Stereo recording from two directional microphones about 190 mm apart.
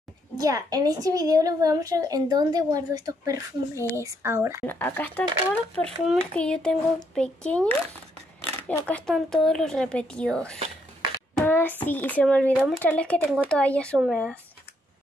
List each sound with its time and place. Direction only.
0.4 s a woman's voice: 20° right (ahead or behind)
4.6 s a child's voice: 10° left (ahead or behind)